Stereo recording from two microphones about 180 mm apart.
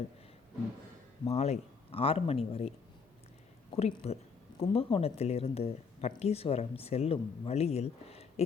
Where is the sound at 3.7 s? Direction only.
30° left (ahead or behind).